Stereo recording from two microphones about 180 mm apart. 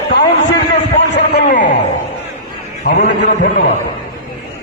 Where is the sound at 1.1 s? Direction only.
70° left (ahead or behind).